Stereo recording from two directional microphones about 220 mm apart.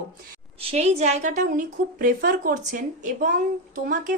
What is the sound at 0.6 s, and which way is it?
A woman's voice, 30° right (ahead or behind).